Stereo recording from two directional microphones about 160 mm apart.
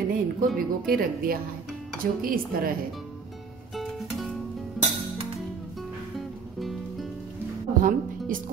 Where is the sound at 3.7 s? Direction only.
Centre (ahead or behind).